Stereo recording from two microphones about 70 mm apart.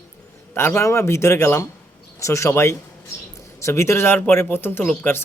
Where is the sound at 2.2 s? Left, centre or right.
Left.